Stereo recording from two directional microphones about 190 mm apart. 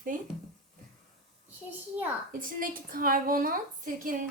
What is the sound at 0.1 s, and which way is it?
Speech, 45° right (ahead or behind).